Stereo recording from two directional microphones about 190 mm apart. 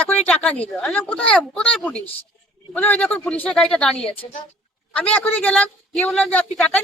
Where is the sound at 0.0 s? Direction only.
5° left (ahead or behind).